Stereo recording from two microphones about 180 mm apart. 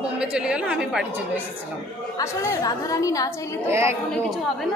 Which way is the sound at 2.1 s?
15° left (ahead or behind).